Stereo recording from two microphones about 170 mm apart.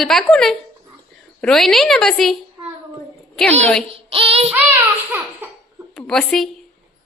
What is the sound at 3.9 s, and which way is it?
Child singing, 35° right (ahead or behind).